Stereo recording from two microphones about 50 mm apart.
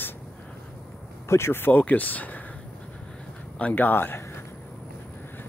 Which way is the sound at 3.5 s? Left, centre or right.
Left.